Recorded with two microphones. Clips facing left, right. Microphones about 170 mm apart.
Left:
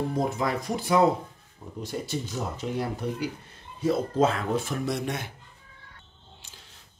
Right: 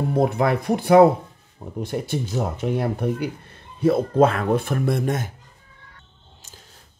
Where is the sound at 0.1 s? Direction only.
60° right (ahead or behind).